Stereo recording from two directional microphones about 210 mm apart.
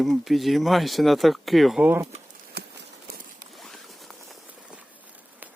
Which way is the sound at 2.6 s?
50° right (ahead or behind).